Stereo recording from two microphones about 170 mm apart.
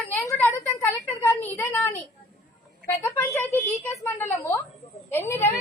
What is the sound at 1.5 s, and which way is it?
A woman's voice, 15° left (ahead or behind).